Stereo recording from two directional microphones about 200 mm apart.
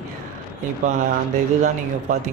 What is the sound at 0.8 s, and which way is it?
Speech, 35° right (ahead or behind).